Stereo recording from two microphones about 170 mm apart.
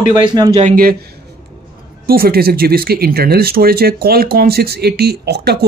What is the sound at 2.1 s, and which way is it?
Speech, 60° right (ahead or behind).